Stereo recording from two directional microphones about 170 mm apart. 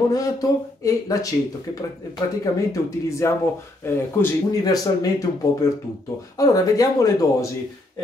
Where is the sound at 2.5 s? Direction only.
20° left (ahead or behind).